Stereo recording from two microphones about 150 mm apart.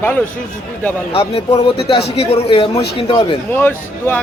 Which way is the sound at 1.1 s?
40° left (ahead or behind).